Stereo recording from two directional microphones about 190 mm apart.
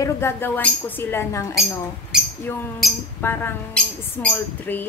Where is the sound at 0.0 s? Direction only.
15° left (ahead or behind).